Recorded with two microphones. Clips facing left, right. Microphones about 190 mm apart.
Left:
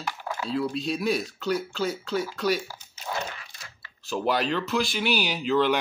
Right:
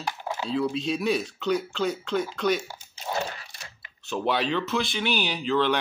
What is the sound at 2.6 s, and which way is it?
Crunch, 25° right (ahead or behind).